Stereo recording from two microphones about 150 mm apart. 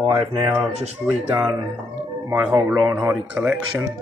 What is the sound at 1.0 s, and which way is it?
Speech, 10° right (ahead or behind).